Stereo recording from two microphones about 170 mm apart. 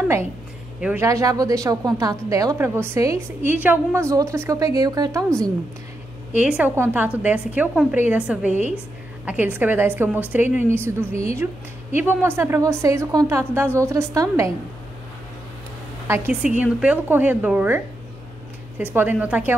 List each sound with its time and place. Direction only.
0.7 s speech: 5° right (ahead or behind)
1.0 s a woman's voice: 20° right (ahead or behind)
6.3 s a woman's voice: 10° right (ahead or behind)
16.1 s a woman's voice: 10° right (ahead or behind)
18.9 s a woman's voice: 10° right (ahead or behind)